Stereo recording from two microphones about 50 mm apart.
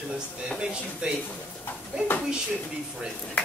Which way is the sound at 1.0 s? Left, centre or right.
Centre.